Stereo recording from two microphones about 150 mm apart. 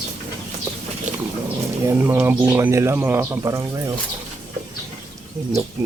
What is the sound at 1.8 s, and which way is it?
Speech, 15° right (ahead or behind).